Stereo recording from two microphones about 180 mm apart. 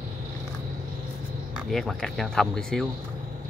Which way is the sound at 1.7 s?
Centre (ahead or behind).